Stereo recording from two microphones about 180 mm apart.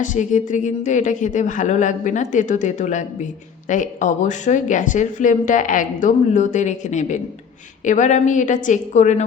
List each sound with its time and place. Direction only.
0.0 s speech: 45° left (ahead or behind)